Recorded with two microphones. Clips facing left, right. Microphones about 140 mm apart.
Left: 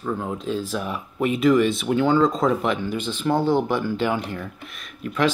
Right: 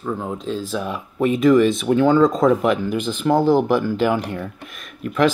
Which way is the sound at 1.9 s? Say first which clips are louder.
Right 3 dB; 45° right (ahead or behind).